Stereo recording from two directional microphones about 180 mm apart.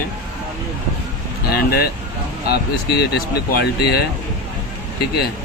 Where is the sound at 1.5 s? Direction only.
60° left (ahead or behind).